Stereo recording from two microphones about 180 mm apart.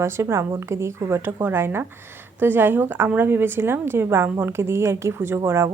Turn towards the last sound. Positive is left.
turn(degrees=-15)  # may be behind; listen again after turning